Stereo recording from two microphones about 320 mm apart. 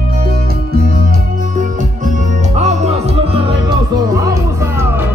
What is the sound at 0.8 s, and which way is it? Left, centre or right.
Music, right.